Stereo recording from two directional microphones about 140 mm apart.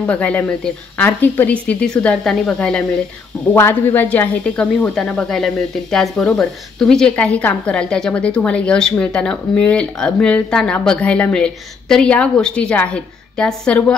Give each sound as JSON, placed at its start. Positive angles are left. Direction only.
{"t": 0.0, "sound": "speech", "side_deg": 10}
{"t": 3.5, "sound": "speech", "side_deg": 15}